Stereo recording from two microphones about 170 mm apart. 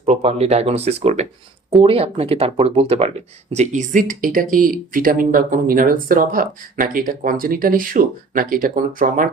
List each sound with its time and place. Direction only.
0.0 s speech: 35° right (ahead or behind); by 9.3 s 50° right (ahead or behind)